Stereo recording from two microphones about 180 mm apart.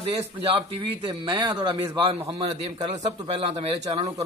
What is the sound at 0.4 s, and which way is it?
A man's voice, 30° right (ahead or behind).